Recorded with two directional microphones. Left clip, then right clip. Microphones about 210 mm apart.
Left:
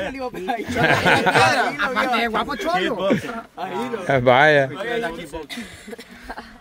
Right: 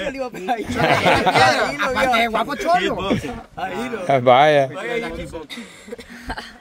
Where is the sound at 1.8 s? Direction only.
25° right (ahead or behind).